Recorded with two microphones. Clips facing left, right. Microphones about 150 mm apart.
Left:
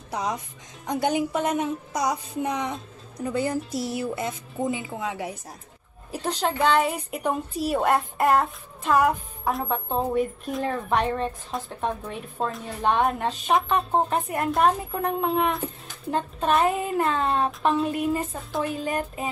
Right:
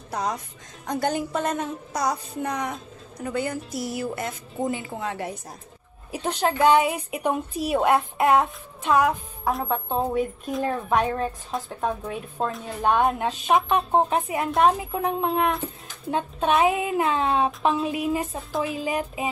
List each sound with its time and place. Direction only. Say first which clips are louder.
0.8 s a woman's voice: left 1 dB; 15° left (ahead or behind); by 3.9 s 30° left (ahead or behind)
4.1 s a woman's voice: left 1 dB; 5° left (ahead or behind)
6.1 s a woman's voice: right 2 dB; 5° right (ahead or behind)